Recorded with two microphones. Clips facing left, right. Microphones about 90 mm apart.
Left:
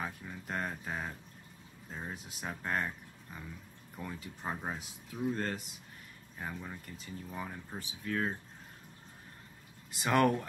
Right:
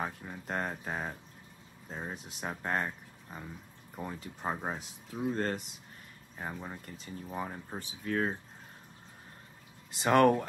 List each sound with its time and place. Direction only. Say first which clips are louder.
0.0 s speech: right 3 dB; 30° right (ahead or behind)
9.8 s speech: right 4 dB; 30° right (ahead or behind)